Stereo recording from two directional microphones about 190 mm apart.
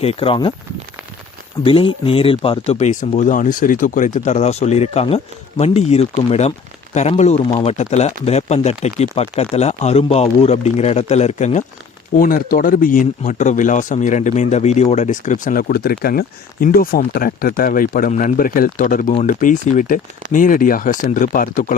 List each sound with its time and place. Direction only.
0.0 s speech: 30° left (ahead or behind)
1.6 s speech: 25° left (ahead or behind)
12.1 s speech: 50° left (ahead or behind)